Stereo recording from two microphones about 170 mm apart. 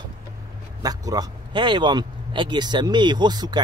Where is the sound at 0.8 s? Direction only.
20° right (ahead or behind).